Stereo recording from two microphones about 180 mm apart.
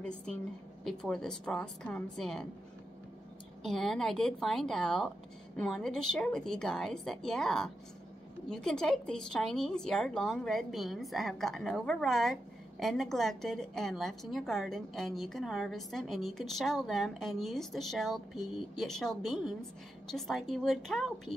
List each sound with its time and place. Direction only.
0.0 s speech: 5° left (ahead or behind)
3.6 s speech: centre (ahead or behind)